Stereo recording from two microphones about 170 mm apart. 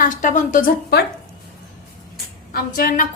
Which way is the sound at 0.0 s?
50° left (ahead or behind).